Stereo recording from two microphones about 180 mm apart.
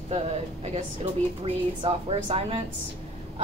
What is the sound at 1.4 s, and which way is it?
A woman's voice, 30° right (ahead or behind).